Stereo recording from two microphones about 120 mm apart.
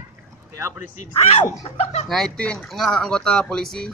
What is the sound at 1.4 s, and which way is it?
Speech, 60° left (ahead or behind).